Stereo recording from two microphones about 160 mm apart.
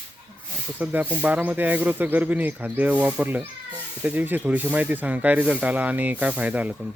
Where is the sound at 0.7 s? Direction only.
10° right (ahead or behind).